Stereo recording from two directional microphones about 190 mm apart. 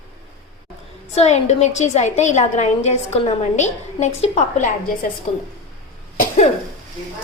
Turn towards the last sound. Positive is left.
turn(degrees=40)  # may be behind; listen again after turning